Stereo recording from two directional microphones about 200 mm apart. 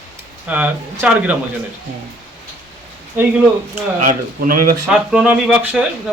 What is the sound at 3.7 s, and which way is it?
Speech, 40° right (ahead or behind).